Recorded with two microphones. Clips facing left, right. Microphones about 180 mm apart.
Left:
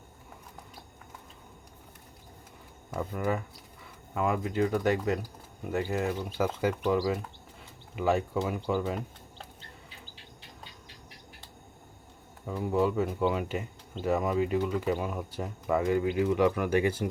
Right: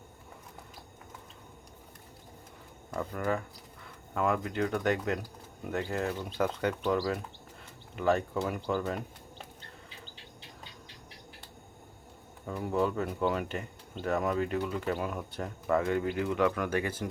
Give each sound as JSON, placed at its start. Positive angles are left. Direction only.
{"t": 2.9, "sound": "speech", "side_deg": 10}
{"t": 12.6, "sound": "speech", "side_deg": 5}